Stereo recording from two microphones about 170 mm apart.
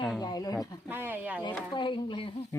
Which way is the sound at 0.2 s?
20° left (ahead or behind).